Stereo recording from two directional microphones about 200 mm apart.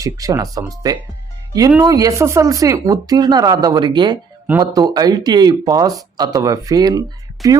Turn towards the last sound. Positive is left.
turn(degrees=-20)  # may be behind; listen again after turning